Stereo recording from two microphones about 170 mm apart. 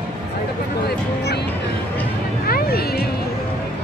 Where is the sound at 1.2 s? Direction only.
80° left.